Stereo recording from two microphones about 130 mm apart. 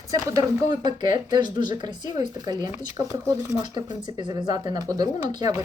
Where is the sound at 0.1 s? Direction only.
25° right (ahead or behind).